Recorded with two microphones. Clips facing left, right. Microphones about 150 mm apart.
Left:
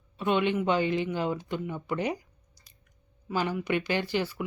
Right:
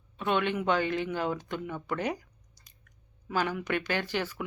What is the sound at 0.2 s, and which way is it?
Speech, 10° left (ahead or behind).